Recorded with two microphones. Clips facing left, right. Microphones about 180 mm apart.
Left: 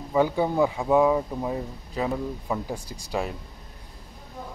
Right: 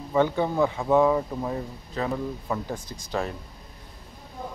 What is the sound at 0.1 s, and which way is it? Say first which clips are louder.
Speech: left 1 dB; 10° left (ahead or behind).